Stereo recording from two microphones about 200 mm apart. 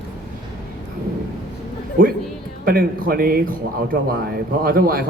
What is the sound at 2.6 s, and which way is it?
A man's voice, 45° right (ahead or behind).